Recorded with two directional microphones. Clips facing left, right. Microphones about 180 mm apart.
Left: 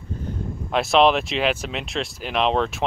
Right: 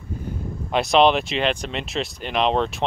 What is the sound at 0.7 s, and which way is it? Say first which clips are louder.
Speech: even; centre (ahead or behind).